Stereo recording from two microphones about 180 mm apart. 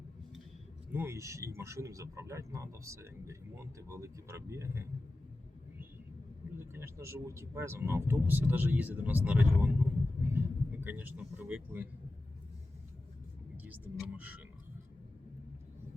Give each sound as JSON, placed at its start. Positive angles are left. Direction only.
{"t": 0.9, "sound": "speech", "side_deg": -10}
{"t": 6.6, "sound": "speech", "side_deg": -15}
{"t": 13.6, "sound": "speech", "side_deg": -10}